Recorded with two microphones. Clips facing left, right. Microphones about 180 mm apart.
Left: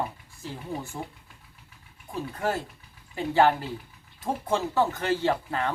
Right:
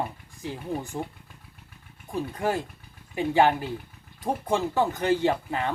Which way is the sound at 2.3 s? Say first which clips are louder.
Even; 15° right (ahead or behind).